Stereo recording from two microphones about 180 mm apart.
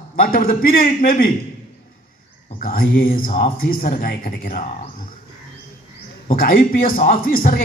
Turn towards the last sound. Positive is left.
turn(degrees=55)  # may be behind; listen again after turning